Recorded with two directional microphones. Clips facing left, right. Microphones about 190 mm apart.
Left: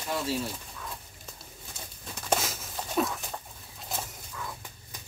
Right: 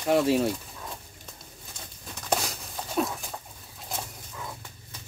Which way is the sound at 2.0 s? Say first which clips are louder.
Even; centre (ahead or behind).